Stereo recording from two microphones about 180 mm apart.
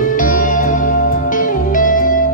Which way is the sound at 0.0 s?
45° left (ahead or behind).